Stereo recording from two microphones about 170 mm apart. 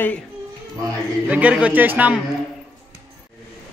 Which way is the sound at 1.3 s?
5° right (ahead or behind).